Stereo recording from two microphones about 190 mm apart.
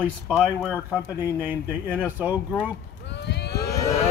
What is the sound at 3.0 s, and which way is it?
Run, 60° left (ahead or behind).